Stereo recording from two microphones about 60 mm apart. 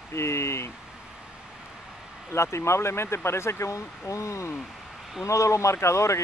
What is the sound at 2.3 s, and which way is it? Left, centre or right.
Speech, left.